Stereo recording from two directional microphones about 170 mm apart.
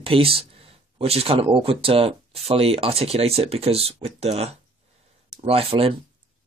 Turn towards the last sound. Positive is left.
turn(degrees=-35)  # may be behind; listen again after turning